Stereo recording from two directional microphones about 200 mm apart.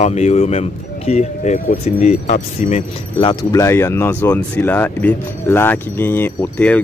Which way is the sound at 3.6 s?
10° left (ahead or behind).